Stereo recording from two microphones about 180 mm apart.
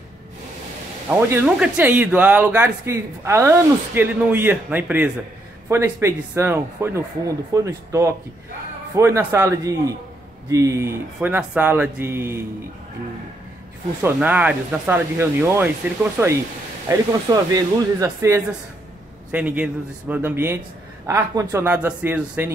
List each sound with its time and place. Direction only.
1.0 s speech: 10° right (ahead or behind)
14.0 s speech: 10° right (ahead or behind)